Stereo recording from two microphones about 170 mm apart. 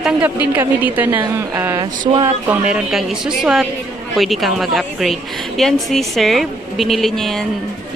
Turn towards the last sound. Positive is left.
turn(degrees=0)  # may be behind; listen again after turning